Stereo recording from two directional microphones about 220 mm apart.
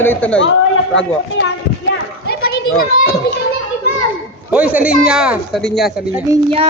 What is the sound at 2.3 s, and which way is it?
Children playing, 45° left (ahead or behind).